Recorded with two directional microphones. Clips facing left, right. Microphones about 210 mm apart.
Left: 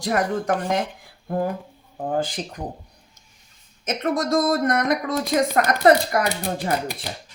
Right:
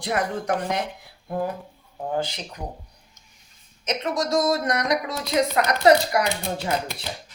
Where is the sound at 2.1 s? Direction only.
50° left (ahead or behind).